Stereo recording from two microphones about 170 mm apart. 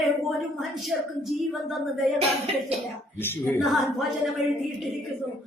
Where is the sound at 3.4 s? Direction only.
Centre (ahead or behind).